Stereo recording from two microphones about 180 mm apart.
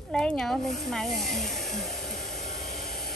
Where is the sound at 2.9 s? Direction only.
60° left (ahead or behind).